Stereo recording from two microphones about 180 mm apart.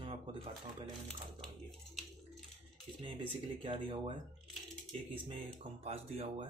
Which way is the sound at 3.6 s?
30° right (ahead or behind).